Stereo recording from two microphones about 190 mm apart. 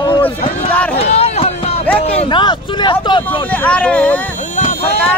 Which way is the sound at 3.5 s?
5° left (ahead or behind).